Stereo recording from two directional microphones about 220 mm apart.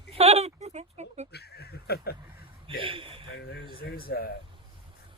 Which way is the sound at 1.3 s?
45° left (ahead or behind).